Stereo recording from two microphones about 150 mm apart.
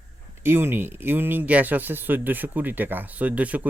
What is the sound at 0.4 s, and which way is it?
Speech, 15° right (ahead or behind).